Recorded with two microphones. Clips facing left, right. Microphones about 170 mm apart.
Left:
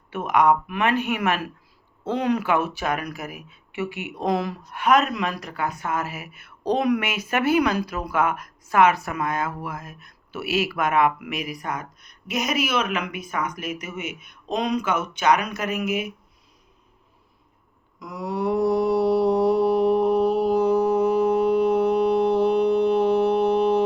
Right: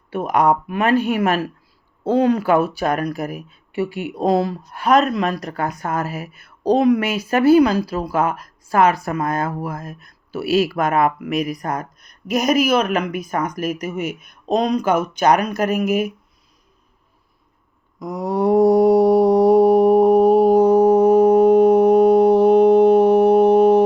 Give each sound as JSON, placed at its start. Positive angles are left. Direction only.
{"t": 0.1, "sound": "speech", "side_deg": -35}
{"t": 18.0, "sound": "mantra", "side_deg": -40}